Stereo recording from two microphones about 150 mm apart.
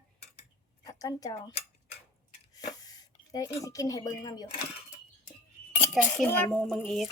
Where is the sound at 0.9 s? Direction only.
25° left (ahead or behind).